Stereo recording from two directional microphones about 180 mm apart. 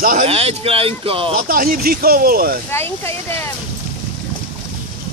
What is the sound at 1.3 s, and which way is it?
Speech, 55° right (ahead or behind).